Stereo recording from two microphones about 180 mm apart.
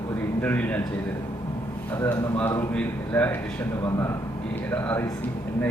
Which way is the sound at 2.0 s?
10° left (ahead or behind).